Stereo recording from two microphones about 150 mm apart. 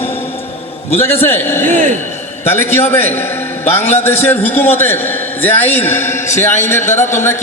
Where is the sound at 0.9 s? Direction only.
15° left (ahead or behind).